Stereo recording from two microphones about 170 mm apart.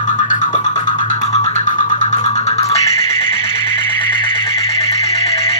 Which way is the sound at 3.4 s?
30° left (ahead or behind).